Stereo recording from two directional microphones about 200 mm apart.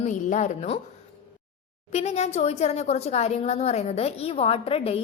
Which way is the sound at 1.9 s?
35° left (ahead or behind).